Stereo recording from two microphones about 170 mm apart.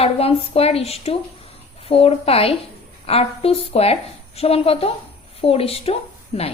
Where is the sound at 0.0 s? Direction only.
35° left (ahead or behind).